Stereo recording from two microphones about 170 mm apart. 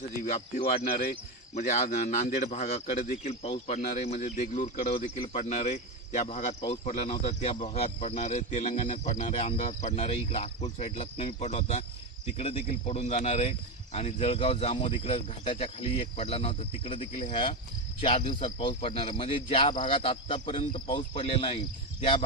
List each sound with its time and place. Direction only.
0.2 s speech: 55° left (ahead or behind)
1.5 s a man's voice: 45° left (ahead or behind)